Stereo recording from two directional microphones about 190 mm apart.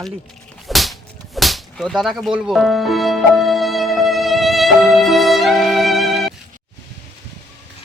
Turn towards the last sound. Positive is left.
turn(degrees=0)  # may be behind; listen again after turning